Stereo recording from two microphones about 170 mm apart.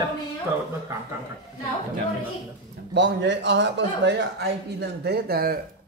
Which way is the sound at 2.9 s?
90° right.